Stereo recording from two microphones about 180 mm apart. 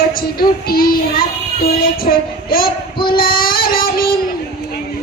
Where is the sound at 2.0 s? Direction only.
55° left (ahead or behind).